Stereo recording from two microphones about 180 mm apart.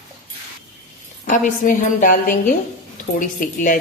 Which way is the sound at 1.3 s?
45° left (ahead or behind).